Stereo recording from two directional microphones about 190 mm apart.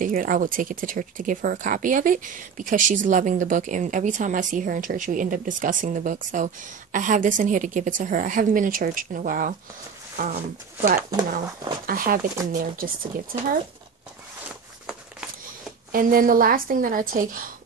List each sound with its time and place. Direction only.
0.0 s speech: 45° right (ahead or behind)
11.0 s speech: 20° right (ahead or behind)
11.2 s speech: 50° right (ahead or behind)
15.9 s speech: 50° right (ahead or behind)